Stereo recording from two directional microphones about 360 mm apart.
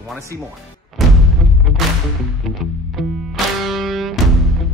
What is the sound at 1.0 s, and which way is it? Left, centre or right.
Artillery fire, centre.